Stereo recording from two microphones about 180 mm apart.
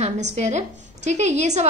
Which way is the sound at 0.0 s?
40° right (ahead or behind).